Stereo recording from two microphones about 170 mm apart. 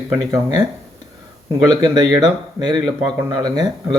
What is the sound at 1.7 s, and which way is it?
Speech, 20° right (ahead or behind).